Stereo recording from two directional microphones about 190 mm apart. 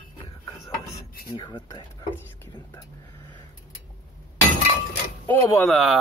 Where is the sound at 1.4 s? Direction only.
25° left (ahead or behind).